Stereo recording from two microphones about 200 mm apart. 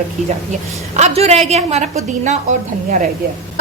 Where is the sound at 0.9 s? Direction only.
35° right (ahead or behind).